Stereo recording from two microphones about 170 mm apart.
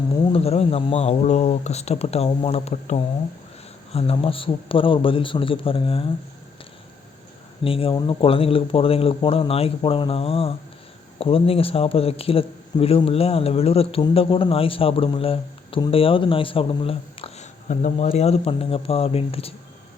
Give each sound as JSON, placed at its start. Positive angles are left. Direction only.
{"t": 0.3, "sound": "a man's voice", "side_deg": 35}
{"t": 7.6, "sound": "a man's voice", "side_deg": 30}